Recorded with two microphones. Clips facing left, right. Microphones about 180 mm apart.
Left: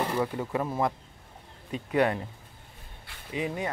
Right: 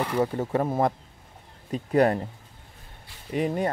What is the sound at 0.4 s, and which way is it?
Speech, 45° right (ahead or behind).